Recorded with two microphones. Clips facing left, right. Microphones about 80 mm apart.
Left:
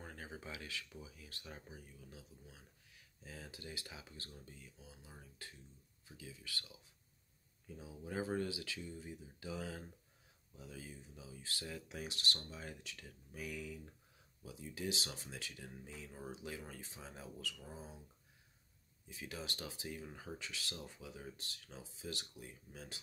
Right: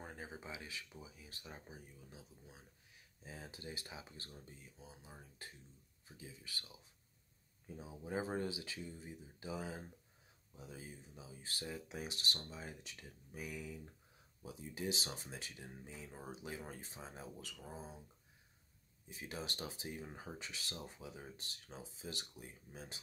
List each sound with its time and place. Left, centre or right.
0.0 s speech: centre
19.0 s speech: right